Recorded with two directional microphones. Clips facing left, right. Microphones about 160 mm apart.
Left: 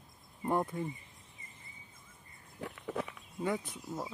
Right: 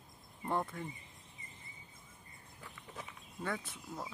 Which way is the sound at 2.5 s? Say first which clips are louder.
Left 13 dB; 75° left (ahead or behind).